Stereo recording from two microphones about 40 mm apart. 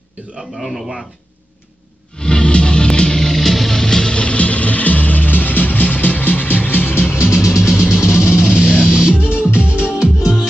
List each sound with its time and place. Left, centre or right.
0.2 s a man's voice: right
0.6 s a man's voice: centre
2.1 s music: left
7.2 s music: centre
9.1 s music: left
9.8 s music: centre